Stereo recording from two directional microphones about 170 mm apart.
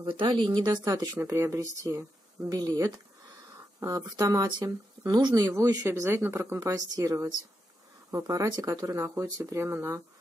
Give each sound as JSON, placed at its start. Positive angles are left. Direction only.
{"t": 0.0, "sound": "speech", "side_deg": -30}